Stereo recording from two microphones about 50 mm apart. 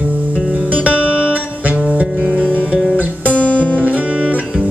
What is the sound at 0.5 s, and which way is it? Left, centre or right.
Music, right.